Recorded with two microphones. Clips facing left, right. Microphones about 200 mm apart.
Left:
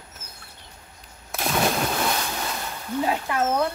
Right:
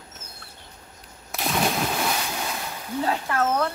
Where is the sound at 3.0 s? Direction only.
15° left (ahead or behind).